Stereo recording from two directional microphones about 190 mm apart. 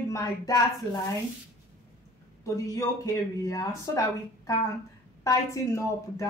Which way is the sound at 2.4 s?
15° left (ahead or behind).